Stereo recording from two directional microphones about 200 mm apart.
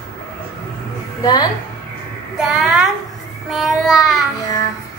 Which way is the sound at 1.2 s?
20° left (ahead or behind).